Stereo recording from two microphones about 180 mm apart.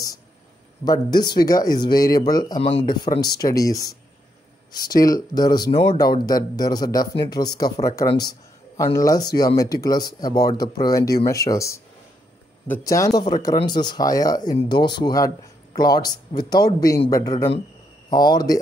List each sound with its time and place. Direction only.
0.8 s speech: 20° left (ahead or behind)